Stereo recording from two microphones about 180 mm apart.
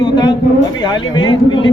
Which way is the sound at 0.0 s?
25° left (ahead or behind).